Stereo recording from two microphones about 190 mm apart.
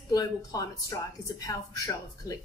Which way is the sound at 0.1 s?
20° left (ahead or behind).